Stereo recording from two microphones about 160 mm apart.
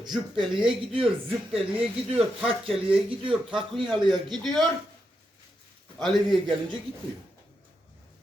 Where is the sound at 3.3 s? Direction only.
5° right (ahead or behind).